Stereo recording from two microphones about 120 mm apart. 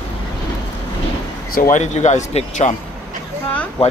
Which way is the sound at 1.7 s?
80° left.